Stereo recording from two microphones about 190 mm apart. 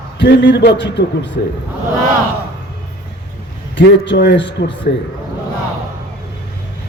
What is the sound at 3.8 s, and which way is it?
Speech, 70° left (ahead or behind).